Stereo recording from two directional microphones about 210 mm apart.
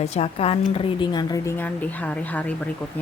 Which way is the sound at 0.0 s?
30° left (ahead or behind).